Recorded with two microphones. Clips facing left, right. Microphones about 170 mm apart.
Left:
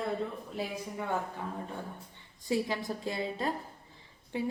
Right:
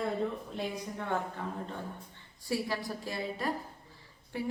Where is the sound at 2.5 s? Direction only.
20° left (ahead or behind).